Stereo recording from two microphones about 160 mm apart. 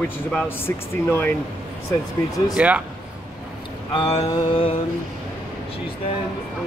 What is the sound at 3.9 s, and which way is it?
Mantra, 35° left (ahead or behind).